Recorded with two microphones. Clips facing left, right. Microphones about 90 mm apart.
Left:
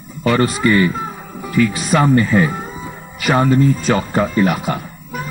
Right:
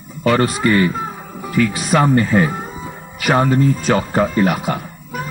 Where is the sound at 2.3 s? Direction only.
45° right (ahead or behind).